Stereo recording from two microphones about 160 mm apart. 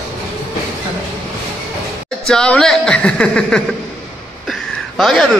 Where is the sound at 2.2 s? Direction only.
5° left (ahead or behind).